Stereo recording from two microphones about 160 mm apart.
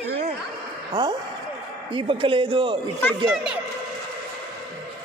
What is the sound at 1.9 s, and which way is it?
Speech, 35° right (ahead or behind).